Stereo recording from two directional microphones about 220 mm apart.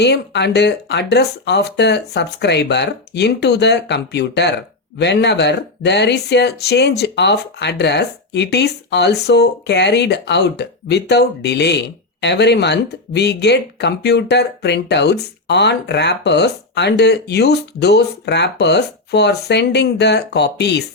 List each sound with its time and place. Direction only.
0.0 s speech: 50° left (ahead or behind)